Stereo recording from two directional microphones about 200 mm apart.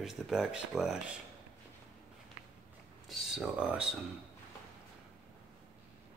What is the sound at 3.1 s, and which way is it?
Speech, centre (ahead or behind).